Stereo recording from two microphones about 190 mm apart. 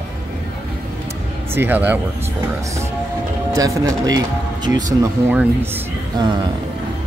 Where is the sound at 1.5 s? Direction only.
10° right (ahead or behind).